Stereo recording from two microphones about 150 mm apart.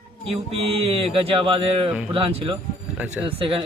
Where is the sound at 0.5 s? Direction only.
40° right (ahead or behind).